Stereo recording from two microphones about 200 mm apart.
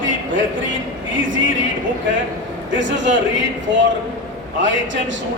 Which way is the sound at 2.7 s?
65° right (ahead or behind).